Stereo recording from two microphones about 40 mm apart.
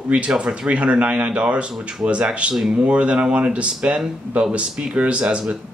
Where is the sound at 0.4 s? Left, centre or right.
Right.